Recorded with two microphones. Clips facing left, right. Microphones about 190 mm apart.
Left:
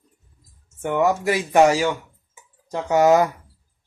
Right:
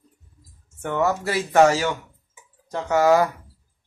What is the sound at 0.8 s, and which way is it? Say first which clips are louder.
Speech: left 3 dB; 15° left (ahead or behind).